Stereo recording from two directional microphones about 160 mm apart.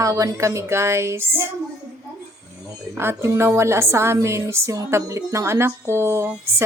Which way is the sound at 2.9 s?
15° right (ahead or behind).